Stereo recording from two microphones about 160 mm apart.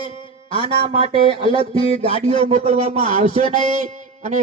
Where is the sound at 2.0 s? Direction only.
40° right (ahead or behind).